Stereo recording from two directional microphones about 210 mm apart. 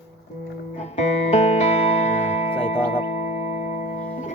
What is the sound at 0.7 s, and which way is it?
Music, 30° left (ahead or behind).